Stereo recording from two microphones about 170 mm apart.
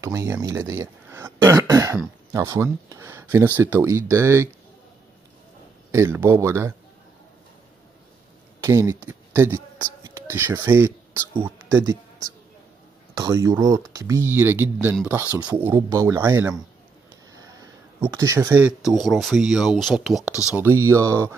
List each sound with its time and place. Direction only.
0.0 s speech: 20° right (ahead or behind)
5.9 s speech: 15° right (ahead or behind)
8.6 s speech: 15° right (ahead or behind)
13.1 s speech: 20° right (ahead or behind)
18.0 s speech: 20° right (ahead or behind)
18.9 s speech: centre (ahead or behind)
20.5 s speech: 15° right (ahead or behind)